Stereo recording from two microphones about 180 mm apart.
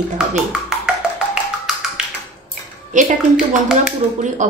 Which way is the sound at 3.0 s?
45° right (ahead or behind).